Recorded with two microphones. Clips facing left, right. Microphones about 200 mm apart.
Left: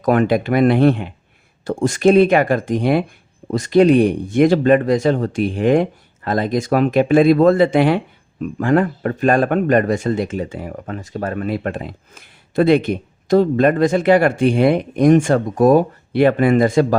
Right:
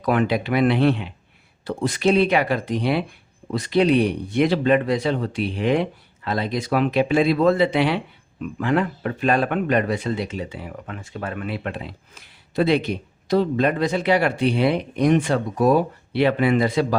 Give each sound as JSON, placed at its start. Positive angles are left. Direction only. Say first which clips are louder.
{"t": 0.0, "sound": "speech", "louder": "left 5 dB", "side_deg": 45}